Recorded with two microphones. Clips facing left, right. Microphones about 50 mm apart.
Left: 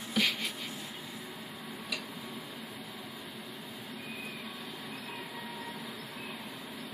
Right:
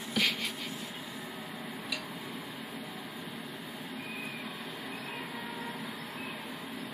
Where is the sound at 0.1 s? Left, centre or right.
Centre.